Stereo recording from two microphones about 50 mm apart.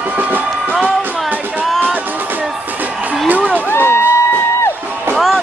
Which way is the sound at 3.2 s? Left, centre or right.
Right.